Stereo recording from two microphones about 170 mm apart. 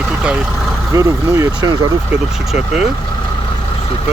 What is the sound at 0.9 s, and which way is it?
Speech, 20° right (ahead or behind).